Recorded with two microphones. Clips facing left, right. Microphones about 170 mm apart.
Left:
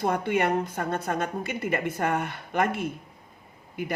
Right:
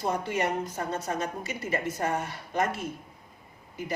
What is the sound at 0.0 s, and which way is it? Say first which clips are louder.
A woman's voice: left 4 dB; 60° left (ahead or behind).